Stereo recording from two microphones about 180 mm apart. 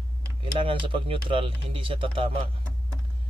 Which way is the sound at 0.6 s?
30° right (ahead or behind).